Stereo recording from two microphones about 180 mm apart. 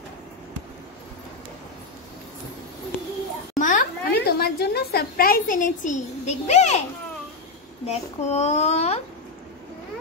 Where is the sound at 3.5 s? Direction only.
45° left (ahead or behind).